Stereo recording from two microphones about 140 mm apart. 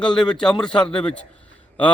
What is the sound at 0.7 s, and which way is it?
Speech, 35° left (ahead or behind).